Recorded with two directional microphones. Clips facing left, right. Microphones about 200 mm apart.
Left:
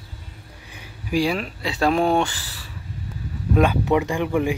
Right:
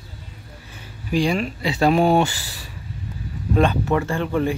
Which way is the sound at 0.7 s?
10° left (ahead or behind).